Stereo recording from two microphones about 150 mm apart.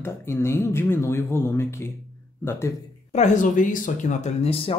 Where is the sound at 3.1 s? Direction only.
55° left (ahead or behind); by 4.7 s 40° left (ahead or behind).